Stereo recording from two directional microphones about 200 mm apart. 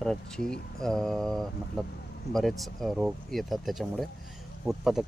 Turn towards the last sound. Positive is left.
turn(degrees=0)  # may be behind; listen again after turning